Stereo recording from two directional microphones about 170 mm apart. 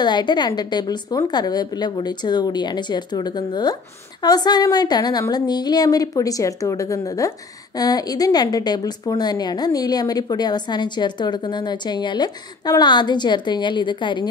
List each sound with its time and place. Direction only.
0.0 s speech: 25° left (ahead or behind)